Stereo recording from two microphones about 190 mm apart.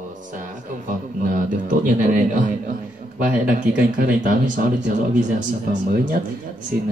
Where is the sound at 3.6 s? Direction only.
45° right (ahead or behind).